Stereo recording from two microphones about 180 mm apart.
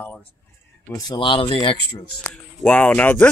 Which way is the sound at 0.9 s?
25° left (ahead or behind).